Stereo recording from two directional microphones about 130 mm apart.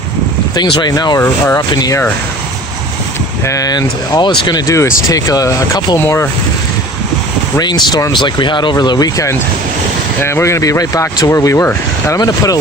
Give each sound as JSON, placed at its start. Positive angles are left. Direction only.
{"t": 0.5, "sound": "speech", "side_deg": 35}
{"t": 1.2, "sound": "speech", "side_deg": 20}
{"t": 1.7, "sound": "speech", "side_deg": 30}
{"t": 3.4, "sound": "speech", "side_deg": 25}
{"t": 7.6, "sound": "speech", "side_deg": 35}